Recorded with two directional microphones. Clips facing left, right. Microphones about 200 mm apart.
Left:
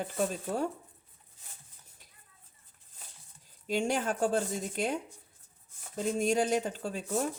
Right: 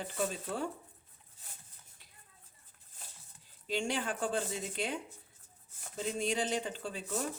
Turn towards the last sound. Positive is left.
turn(degrees=45)  # may be behind; listen again after turning